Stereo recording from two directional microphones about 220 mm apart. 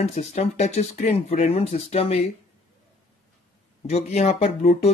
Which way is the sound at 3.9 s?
30° left (ahead or behind).